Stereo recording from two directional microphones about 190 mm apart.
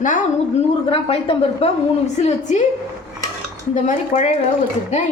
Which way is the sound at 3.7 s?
40° left (ahead or behind).